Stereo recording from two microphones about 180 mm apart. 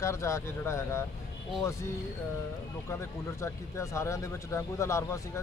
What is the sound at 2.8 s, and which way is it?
Speech, 15° left (ahead or behind).